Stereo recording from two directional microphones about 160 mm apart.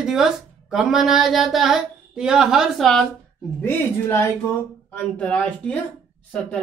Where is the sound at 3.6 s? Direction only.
15° left (ahead or behind).